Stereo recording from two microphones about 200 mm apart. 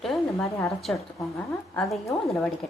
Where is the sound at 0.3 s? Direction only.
15° left (ahead or behind).